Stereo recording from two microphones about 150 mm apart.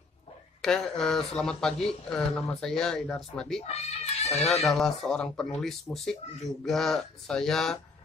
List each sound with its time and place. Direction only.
0.6 s speech: 5° left (ahead or behind)
3.6 s cat: 45° left (ahead or behind)
4.6 s speech: 5° left (ahead or behind)